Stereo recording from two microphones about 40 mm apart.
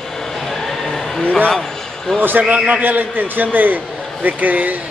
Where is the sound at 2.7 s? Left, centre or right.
Right.